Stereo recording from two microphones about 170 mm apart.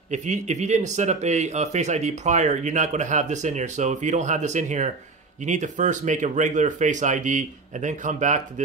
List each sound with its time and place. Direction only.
0.1 s speech: 45° right (ahead or behind)